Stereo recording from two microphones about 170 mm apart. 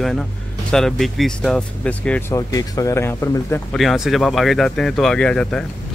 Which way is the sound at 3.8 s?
Centre (ahead or behind).